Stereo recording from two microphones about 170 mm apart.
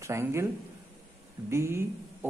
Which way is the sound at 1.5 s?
15° right (ahead or behind).